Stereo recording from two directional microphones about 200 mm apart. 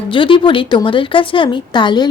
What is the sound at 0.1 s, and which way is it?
Speech, 25° left (ahead or behind).